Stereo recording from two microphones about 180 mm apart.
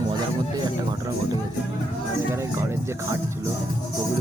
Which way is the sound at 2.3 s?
15° right (ahead or behind).